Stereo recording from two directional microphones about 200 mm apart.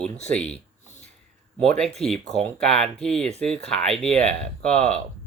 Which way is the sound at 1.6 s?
5° left (ahead or behind).